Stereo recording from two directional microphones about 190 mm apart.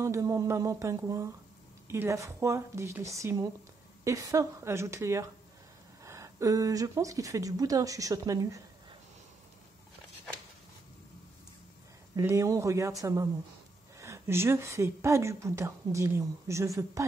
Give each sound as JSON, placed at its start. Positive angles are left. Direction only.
{"t": 0.0, "sound": "a woman's voice", "side_deg": -15}
{"t": 12.2, "sound": "a woman's voice", "side_deg": -15}